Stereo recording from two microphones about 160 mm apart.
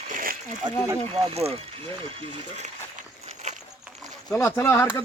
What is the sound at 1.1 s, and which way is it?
Speech, 35° right (ahead or behind).